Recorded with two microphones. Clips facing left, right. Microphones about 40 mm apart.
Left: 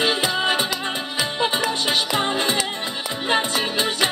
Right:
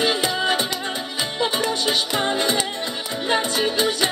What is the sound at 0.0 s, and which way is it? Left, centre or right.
Music, left.